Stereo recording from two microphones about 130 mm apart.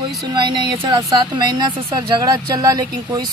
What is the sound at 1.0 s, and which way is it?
A woman's voice, 25° right (ahead or behind).